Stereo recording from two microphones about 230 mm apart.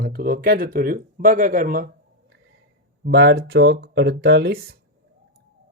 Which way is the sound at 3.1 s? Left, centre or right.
Right.